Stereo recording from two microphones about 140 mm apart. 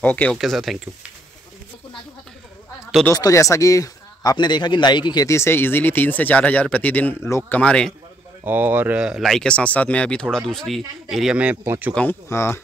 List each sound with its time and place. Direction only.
0.0 s speech: 10° left (ahead or behind)
0.4 s speech: centre (ahead or behind)
3.1 s speech: 25° left (ahead or behind); by 7.9 s 5° left (ahead or behind)
8.5 s speech: 15° right (ahead or behind)
11.9 s speech: 10° left (ahead or behind)